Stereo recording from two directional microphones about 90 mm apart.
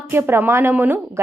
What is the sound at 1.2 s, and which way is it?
Speech, 30° right (ahead or behind).